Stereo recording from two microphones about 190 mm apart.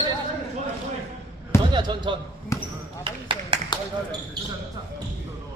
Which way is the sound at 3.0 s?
25° right (ahead or behind).